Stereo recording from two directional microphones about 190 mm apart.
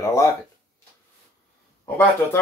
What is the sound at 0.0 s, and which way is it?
Speech, 15° left (ahead or behind).